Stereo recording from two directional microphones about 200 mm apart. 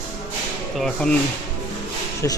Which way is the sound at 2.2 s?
15° left (ahead or behind).